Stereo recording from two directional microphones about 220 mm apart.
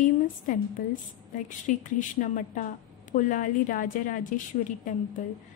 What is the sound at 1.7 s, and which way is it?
A woman's voice, 35° left (ahead or behind).